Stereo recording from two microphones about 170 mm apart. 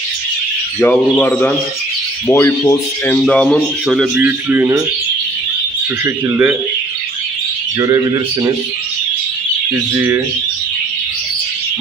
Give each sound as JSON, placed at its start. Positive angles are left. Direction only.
{"t": 0.7, "sound": "speech", "side_deg": 10}
{"t": 3.3, "sound": "speech", "side_deg": 5}
{"t": 6.0, "sound": "speech", "side_deg": -15}
{"t": 7.8, "sound": "a man's voice", "side_deg": -20}
{"t": 9.9, "sound": "speech", "side_deg": -10}